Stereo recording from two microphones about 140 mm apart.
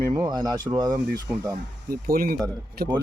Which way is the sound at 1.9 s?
90° right.